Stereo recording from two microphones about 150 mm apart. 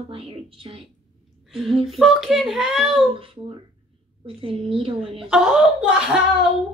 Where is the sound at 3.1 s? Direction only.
40° right (ahead or behind).